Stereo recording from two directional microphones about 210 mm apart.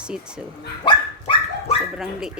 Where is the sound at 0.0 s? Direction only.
5° right (ahead or behind).